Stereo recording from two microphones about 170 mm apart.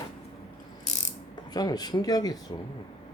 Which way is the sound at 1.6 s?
25° left (ahead or behind).